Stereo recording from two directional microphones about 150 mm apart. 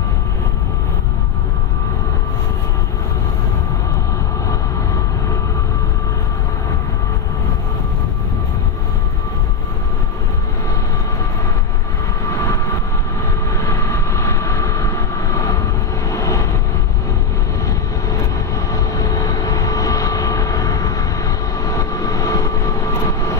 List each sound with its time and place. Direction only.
13.7 s vehicle: 20° left (ahead or behind)
16.1 s vehicle: 20° left (ahead or behind)
18.7 s vehicle: 20° left (ahead or behind)